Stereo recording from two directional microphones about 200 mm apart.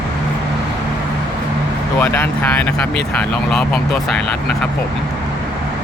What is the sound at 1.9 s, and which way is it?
Speech, 10° left (ahead or behind).